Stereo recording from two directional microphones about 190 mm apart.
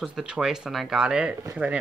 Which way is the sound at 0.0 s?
5° right (ahead or behind).